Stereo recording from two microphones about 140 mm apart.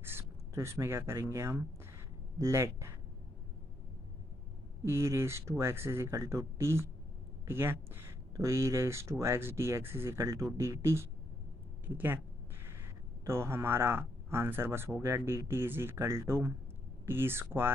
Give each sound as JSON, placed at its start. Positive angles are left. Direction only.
{"t": 0.0, "sound": "speech", "side_deg": -15}
{"t": 4.8, "sound": "speech", "side_deg": -20}
{"t": 13.2, "sound": "speech", "side_deg": -20}